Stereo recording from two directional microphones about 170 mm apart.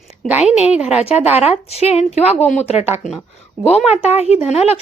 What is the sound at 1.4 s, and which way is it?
Speech, 40° left (ahead or behind).